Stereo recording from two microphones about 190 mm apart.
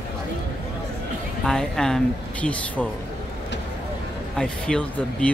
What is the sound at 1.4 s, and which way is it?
Speech, 5° left (ahead or behind).